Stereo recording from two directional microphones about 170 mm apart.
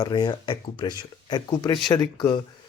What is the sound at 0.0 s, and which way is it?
Speech, 25° left (ahead or behind).